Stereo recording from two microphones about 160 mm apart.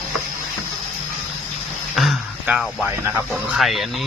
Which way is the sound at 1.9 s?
Centre (ahead or behind).